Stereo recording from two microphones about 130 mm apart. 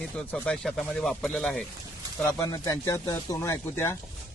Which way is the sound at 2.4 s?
25° left (ahead or behind).